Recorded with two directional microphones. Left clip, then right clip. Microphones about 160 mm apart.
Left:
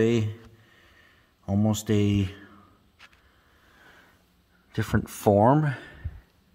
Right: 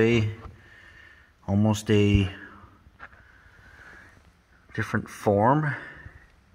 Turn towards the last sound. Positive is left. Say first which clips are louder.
# left 1 dB
turn(degrees=75)  # may be behind; listen again after turning